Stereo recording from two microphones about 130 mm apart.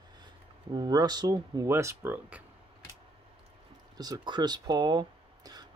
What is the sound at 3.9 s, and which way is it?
Speech, 30° right (ahead or behind).